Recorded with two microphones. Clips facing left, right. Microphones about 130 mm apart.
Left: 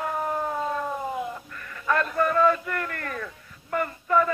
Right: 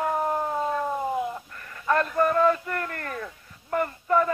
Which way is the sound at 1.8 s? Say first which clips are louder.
Right 1 dB; 30° right (ahead or behind).